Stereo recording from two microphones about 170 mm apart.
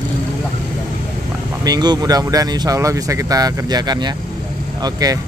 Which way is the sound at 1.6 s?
25° right (ahead or behind).